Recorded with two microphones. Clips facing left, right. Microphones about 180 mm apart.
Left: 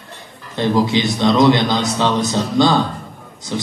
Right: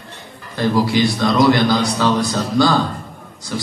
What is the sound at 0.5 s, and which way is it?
A man's voice, 20° left (ahead or behind).